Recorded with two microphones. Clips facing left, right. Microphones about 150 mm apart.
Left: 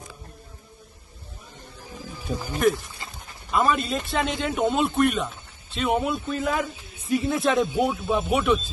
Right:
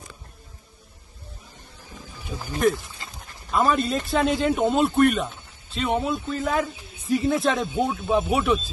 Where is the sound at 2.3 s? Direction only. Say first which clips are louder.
Left 5 dB; 65° left (ahead or behind).